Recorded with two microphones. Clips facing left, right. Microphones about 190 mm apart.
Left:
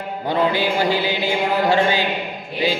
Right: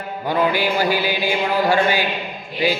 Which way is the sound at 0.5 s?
25° left (ahead or behind).